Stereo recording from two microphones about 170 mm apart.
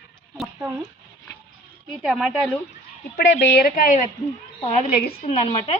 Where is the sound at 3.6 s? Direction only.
55° left (ahead or behind).